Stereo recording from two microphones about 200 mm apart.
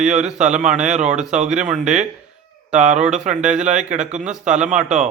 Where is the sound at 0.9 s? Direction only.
35° right (ahead or behind).